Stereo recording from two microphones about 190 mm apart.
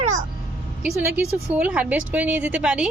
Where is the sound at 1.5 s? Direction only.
5° right (ahead or behind).